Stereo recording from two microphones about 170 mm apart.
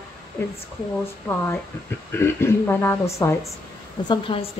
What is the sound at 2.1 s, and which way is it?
A woman's voice, 15° left (ahead or behind).